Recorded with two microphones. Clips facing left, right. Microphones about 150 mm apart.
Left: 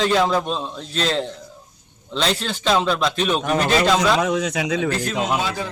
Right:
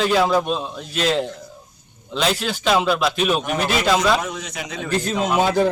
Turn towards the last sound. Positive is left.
turn(degrees=-55)  # may be behind; listen again after turning